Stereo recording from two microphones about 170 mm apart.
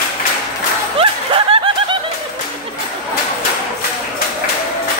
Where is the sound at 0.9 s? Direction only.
30° right (ahead or behind).